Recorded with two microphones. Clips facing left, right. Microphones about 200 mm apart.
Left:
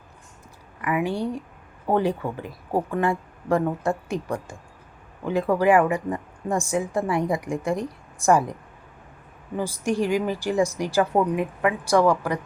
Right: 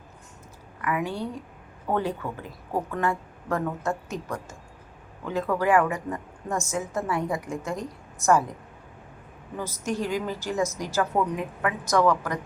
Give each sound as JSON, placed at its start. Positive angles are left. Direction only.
{"t": 0.8, "sound": "a woman's voice", "side_deg": 15}
{"t": 1.9, "sound": "a woman's voice", "side_deg": 40}
{"t": 2.3, "sound": "a woman's voice", "side_deg": 15}
{"t": 5.2, "sound": "a man's voice", "side_deg": 15}
{"t": 9.6, "sound": "a woman's voice", "side_deg": 10}
{"t": 11.0, "sound": "a woman's voice", "side_deg": 30}
{"t": 11.3, "sound": "a woman's voice", "side_deg": 15}